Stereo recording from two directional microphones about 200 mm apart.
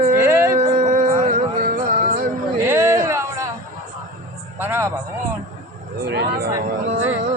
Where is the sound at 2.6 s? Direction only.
10° right (ahead or behind).